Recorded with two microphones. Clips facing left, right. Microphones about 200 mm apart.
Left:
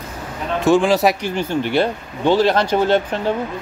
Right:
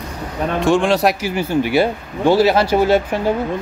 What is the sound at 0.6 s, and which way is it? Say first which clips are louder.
Speech: left 1 dB; centre (ahead or behind).